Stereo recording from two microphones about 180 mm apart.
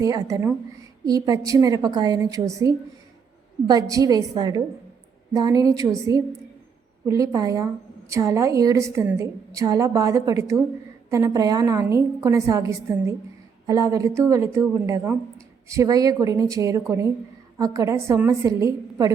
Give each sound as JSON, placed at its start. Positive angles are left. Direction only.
{"t": 0.0, "sound": "a woman's voice", "side_deg": -20}